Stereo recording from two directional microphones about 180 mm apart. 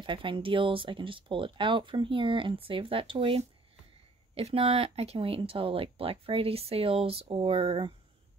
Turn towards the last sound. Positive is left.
turn(degrees=-30)  # may be behind; listen again after turning